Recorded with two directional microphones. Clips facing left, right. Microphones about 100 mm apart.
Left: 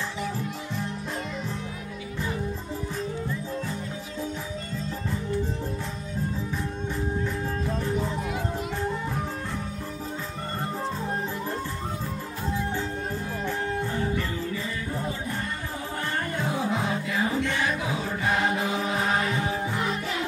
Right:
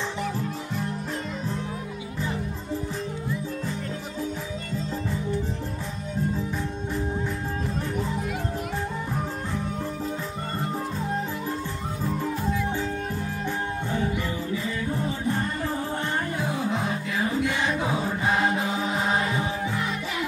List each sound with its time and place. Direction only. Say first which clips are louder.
16.3 s music: even; centre (ahead or behind)
17.5 s music: right 1 dB; 15° right (ahead or behind)
17.7 s music: right 3 dB; 30° right (ahead or behind)